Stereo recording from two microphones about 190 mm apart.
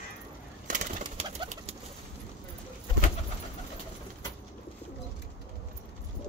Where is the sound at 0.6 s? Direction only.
40° right (ahead or behind).